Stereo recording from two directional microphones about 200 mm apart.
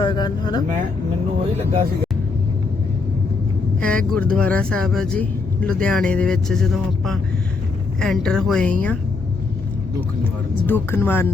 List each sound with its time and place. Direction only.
0.0 s speech: 20° left (ahead or behind)
3.8 s speech: 5° left (ahead or behind)
10.7 s speech: 10° left (ahead or behind)